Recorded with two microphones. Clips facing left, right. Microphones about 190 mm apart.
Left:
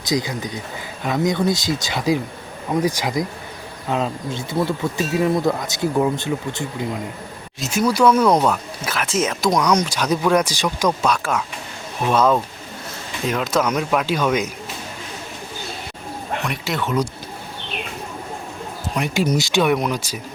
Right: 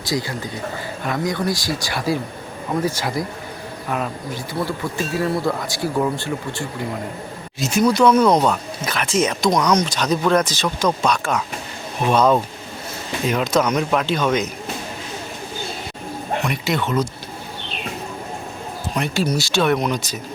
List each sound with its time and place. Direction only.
0.0 s speech: 20° left (ahead or behind)
7.6 s speech: 5° left (ahead or behind)
16.5 s speech: centre (ahead or behind)
18.9 s speech: 15° left (ahead or behind)